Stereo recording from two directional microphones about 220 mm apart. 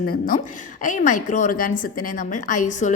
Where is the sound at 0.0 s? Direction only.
40° left (ahead or behind).